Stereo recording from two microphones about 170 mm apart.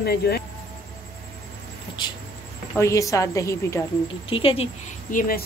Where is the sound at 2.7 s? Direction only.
15° left (ahead or behind).